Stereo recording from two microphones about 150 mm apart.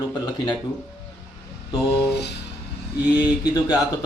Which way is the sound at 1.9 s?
90° left.